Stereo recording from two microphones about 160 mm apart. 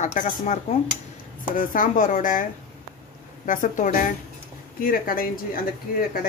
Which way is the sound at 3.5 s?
55° left (ahead or behind).